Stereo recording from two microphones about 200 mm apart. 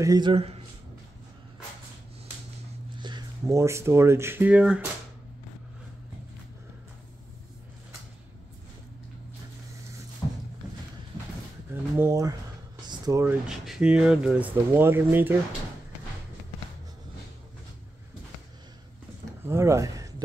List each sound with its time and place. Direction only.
0.0 s a man's voice: 20° right (ahead or behind)
3.0 s speech: 20° right (ahead or behind)
11.7 s a sound: 15° right (ahead or behind)
12.8 s speech: 20° right (ahead or behind)
19.4 s speech: 15° right (ahead or behind)